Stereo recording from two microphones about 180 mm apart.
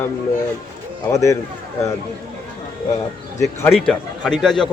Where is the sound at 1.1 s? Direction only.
15° left (ahead or behind).